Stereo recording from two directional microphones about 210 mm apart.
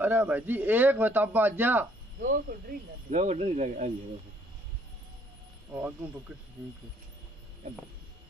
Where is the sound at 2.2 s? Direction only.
40° right (ahead or behind).